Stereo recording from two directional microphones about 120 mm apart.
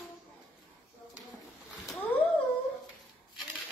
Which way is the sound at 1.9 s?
15° left (ahead or behind).